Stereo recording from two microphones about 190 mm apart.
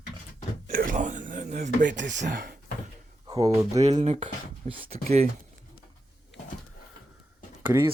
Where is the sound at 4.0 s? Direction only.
35° right (ahead or behind).